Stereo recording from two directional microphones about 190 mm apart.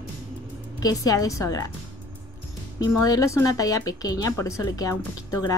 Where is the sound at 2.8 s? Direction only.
20° left (ahead or behind).